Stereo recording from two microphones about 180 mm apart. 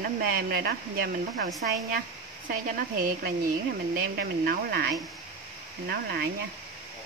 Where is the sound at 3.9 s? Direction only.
55° right (ahead or behind).